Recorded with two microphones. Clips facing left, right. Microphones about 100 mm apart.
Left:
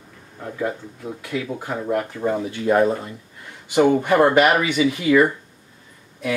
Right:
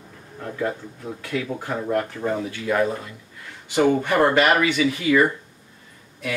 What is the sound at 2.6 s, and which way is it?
Speech, 30° left (ahead or behind).